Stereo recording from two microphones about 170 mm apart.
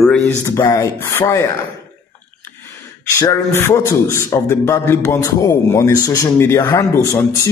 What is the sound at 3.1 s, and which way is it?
A man's voice, 20° left (ahead or behind).